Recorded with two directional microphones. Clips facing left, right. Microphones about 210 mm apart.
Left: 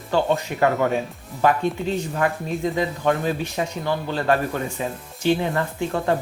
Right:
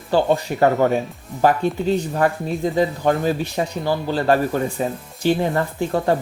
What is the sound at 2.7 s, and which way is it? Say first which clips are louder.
Speech: right 5 dB; 35° right (ahead or behind).